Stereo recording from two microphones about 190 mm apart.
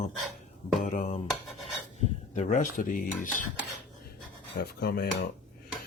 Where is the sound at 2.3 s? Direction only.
40° left (ahead or behind).